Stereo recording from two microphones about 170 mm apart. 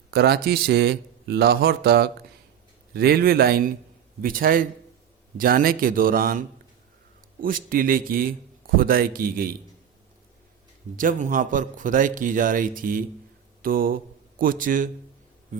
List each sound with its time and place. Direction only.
0.1 s a man's voice: 70° right (ahead or behind)
7.4 s a man's voice: 55° right (ahead or behind)
10.9 s a man's voice: 50° right (ahead or behind)